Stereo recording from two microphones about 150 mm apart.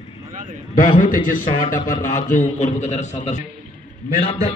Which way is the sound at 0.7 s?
60° left (ahead or behind).